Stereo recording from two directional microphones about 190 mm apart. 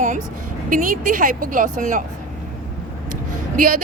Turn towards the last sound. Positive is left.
turn(degrees=-45)  # may be behind; listen again after turning